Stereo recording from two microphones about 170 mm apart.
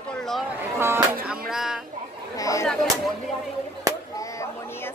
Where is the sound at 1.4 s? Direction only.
Centre (ahead or behind).